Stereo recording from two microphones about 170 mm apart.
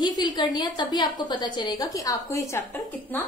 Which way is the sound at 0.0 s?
25° left (ahead or behind).